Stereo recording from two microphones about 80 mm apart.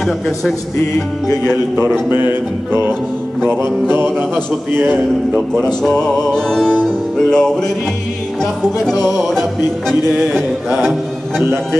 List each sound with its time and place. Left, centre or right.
0.0 s speech: centre
2.0 s music: right
4.7 s music: right
5.8 s music: centre
10.8 s speech: centre